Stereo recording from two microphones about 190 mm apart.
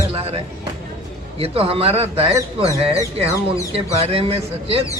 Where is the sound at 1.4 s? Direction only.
30° right (ahead or behind).